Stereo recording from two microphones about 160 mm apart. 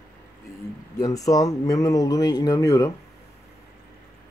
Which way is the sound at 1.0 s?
20° left (ahead or behind).